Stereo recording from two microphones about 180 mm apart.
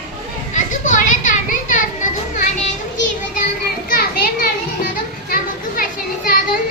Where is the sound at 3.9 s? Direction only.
55° left (ahead or behind).